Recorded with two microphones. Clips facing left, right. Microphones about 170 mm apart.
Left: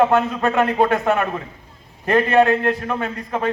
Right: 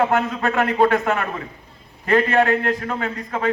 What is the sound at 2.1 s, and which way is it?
Speech, 20° left (ahead or behind).